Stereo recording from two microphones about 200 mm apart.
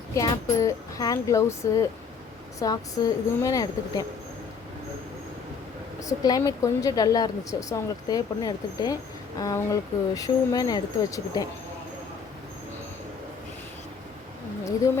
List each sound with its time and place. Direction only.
0.1 s speech: 15° left (ahead or behind)
6.1 s a woman's voice: 20° left (ahead or behind)